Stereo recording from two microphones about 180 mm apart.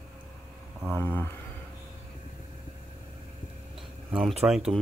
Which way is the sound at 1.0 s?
10° left (ahead or behind).